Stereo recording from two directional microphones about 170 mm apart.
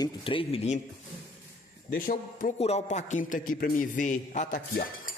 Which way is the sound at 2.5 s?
40° left (ahead or behind).